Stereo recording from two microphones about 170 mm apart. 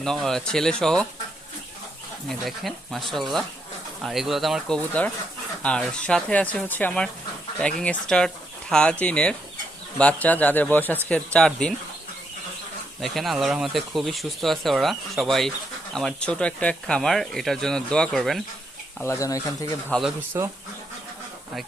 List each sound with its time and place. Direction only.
0.0 s speech: 5° left (ahead or behind)
2.3 s speech: centre (ahead or behind)
13.0 s speech: centre (ahead or behind)
19.0 s speech: 20° left (ahead or behind)
19.9 s speech: centre (ahead or behind)
20.4 s speech: 15° right (ahead or behind)